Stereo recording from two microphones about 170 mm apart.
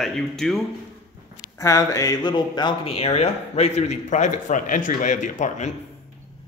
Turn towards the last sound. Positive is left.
turn(degrees=45)  # may be behind; listen again after turning